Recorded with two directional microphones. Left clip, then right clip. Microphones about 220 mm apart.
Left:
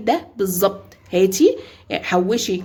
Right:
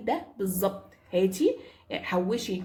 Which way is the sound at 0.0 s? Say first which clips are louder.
Left 10 dB; 45° left (ahead or behind).